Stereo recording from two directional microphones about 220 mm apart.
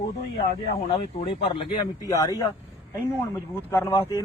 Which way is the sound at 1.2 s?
25° left (ahead or behind).